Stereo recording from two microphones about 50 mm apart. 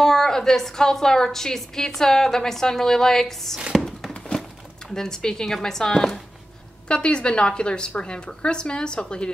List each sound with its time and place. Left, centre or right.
0.0 s a woman's voice: centre
3.7 s a sound: centre
4.4 s speech: centre